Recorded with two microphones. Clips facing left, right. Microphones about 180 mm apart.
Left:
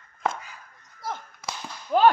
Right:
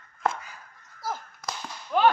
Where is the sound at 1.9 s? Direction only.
35° left (ahead or behind).